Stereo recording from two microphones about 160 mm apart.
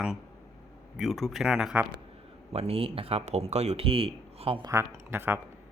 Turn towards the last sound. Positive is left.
turn(degrees=-15)  # may be behind; listen again after turning